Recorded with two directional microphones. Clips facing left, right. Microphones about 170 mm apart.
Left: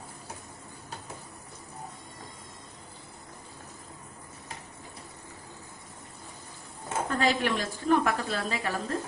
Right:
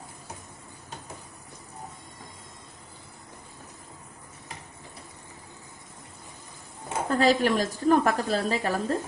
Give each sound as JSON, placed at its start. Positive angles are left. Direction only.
{"t": 7.1, "sound": "a woman's voice", "side_deg": -35}